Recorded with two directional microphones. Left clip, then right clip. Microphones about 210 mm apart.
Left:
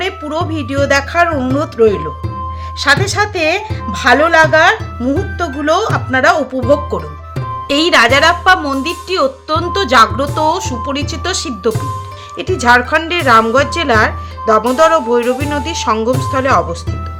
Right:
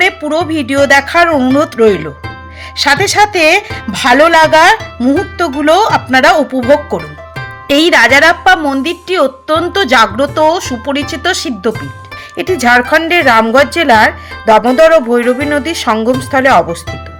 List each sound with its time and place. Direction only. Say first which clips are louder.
0.0 s a woman's voice: right 7 dB; 20° right (ahead or behind)